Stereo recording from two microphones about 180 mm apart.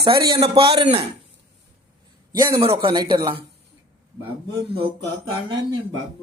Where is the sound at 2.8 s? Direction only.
25° right (ahead or behind).